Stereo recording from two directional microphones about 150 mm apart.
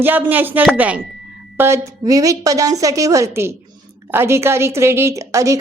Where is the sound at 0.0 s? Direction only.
10° right (ahead or behind).